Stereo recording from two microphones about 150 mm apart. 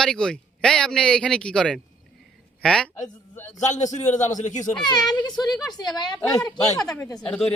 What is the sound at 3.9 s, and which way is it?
Speech, 50° left (ahead or behind).